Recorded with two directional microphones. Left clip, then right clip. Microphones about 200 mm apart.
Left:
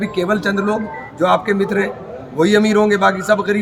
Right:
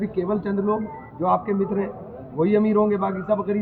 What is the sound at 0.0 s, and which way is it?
A man's voice, 25° left (ahead or behind).